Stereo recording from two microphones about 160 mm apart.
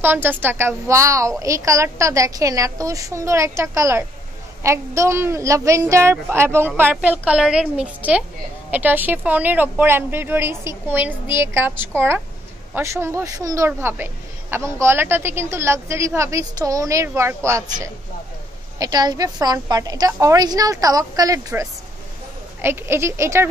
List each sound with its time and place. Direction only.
0.0 s a woman's voice: 10° right (ahead or behind)